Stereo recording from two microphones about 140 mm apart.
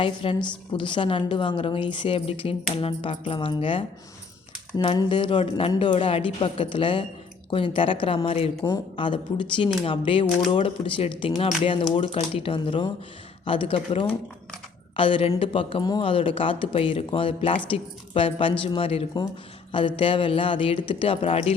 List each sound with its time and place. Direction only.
0.0 s speech: 40° left (ahead or behind)
5.0 s speech: 35° left (ahead or behind)